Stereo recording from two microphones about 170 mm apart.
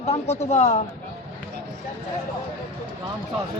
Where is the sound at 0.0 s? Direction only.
40° left (ahead or behind).